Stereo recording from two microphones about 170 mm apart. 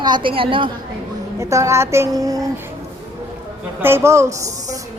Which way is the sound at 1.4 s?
15° right (ahead or behind).